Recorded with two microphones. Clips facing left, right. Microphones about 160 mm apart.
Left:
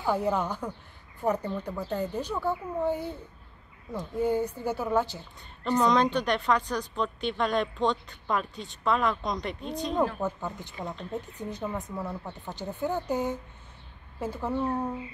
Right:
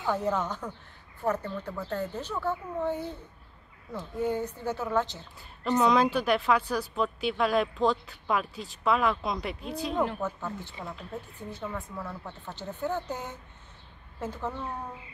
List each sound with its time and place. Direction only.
0.0 s speech: 10° left (ahead or behind)
5.8 s a woman's voice: 5° right (ahead or behind)
10.2 s speech: 15° left (ahead or behind)